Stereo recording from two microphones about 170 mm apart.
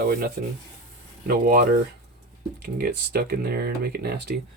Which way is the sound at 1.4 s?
55° right (ahead or behind).